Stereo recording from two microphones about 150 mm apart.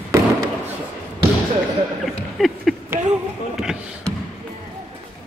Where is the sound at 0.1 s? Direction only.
20° right (ahead or behind).